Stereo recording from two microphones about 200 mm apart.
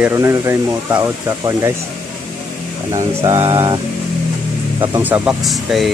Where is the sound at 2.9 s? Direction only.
15° right (ahead or behind).